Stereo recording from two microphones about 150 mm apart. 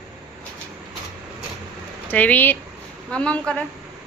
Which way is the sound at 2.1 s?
10° left (ahead or behind).